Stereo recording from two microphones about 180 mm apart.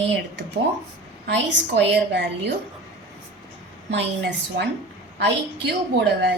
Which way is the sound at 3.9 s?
75° right (ahead or behind).